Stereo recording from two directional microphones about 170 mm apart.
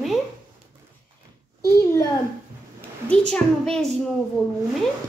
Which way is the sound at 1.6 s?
15° left (ahead or behind).